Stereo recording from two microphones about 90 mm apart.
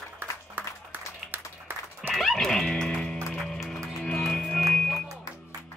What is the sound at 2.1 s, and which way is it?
Music, 5° left (ahead or behind).